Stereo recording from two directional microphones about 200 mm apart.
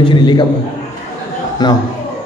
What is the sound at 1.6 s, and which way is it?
Speech, 20° left (ahead or behind).